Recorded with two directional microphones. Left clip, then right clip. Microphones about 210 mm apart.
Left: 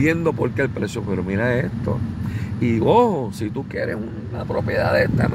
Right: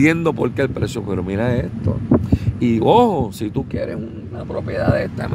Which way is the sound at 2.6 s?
25° right (ahead or behind).